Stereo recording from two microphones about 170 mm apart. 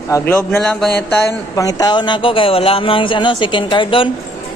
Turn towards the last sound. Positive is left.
turn(degrees=30)  # may be behind; listen again after turning